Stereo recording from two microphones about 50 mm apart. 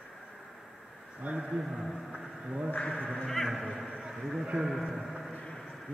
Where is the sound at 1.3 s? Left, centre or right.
Right.